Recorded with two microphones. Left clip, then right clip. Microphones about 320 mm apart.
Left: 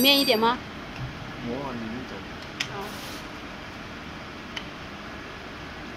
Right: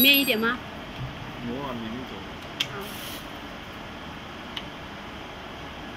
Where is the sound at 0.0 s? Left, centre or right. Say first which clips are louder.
Even; centre.